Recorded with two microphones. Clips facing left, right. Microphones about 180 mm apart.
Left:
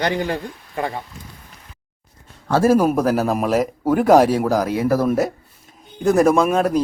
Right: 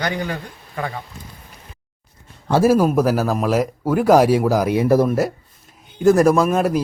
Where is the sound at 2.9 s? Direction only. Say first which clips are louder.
Even; centre (ahead or behind).